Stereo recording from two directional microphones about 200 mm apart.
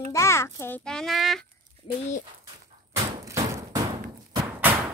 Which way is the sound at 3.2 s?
15° right (ahead or behind).